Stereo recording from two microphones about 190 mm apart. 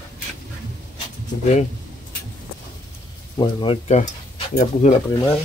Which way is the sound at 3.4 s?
25° left (ahead or behind).